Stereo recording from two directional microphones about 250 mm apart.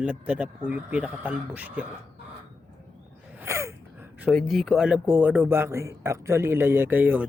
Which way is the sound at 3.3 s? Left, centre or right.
Centre.